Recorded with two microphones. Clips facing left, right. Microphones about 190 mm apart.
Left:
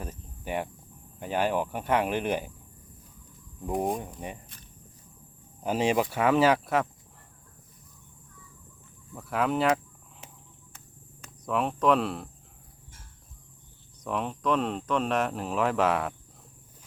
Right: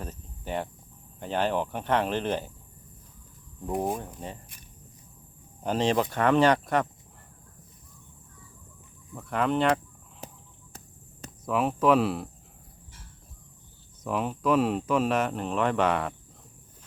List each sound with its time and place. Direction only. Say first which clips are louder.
0.0 s cricket: even; 10° left (ahead or behind)
1.2 s speech: even; 10° left (ahead or behind)
3.7 s speech: even; centre (ahead or behind)
5.6 s speech: even; 10° left (ahead or behind)
9.1 s speech: right 1 dB; 5° left (ahead or behind)
10.2 s a sound: right 8 dB; 35° right (ahead or behind)
11.4 s speech: right 2 dB; 5° right (ahead or behind)
14.0 s speech: right 2 dB; 5° right (ahead or behind)